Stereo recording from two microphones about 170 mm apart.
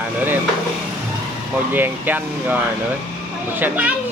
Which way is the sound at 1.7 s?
10° right (ahead or behind).